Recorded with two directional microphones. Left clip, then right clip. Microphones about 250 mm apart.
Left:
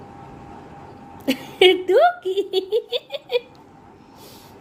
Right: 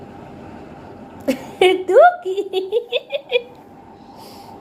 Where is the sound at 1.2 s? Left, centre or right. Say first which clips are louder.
Even; centre.